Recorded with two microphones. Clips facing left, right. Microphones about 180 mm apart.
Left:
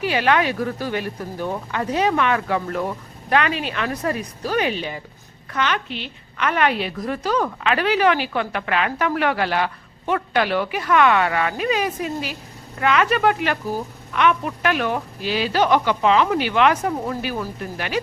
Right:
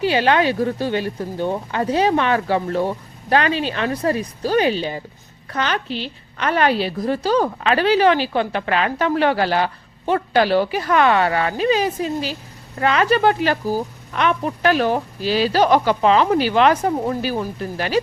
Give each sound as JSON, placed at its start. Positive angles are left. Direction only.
{"t": 0.0, "sound": "a woman's voice", "side_deg": -30}